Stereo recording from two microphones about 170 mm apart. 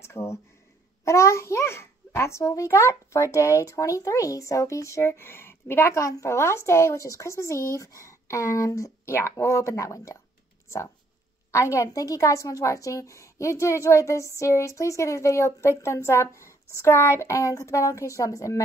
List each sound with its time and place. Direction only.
0.0 s a child's voice: 15° left (ahead or behind)
11.5 s a child's voice: 20° left (ahead or behind)